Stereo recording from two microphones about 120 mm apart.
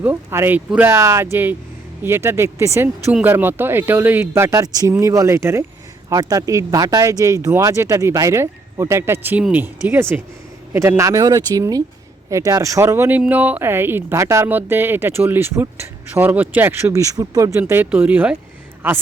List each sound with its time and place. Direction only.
0.0 s speech: 20° right (ahead or behind)
17.6 s speech: 15° right (ahead or behind)